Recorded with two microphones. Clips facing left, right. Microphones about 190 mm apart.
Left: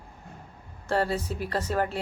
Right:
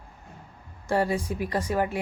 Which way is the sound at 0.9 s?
15° right (ahead or behind).